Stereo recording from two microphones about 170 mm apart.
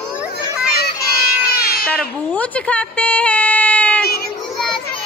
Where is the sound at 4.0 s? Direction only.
65° left (ahead or behind).